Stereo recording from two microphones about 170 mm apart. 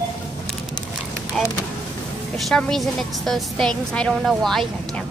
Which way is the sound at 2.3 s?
5° left (ahead or behind).